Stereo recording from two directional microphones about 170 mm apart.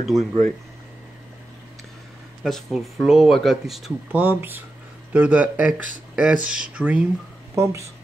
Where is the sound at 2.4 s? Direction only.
Centre (ahead or behind); by 7.9 s 15° right (ahead or behind).